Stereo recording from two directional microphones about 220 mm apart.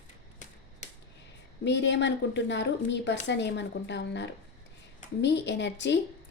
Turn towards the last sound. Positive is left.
turn(degrees=55)  # may be behind; listen again after turning